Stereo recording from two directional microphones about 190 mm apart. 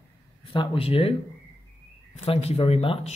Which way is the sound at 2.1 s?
30° left (ahead or behind).